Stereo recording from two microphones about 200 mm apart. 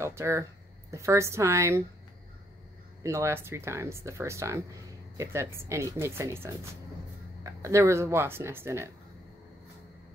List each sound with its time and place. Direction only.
0.0 s speech: 15° right (ahead or behind)
3.0 s speech: 15° right (ahead or behind)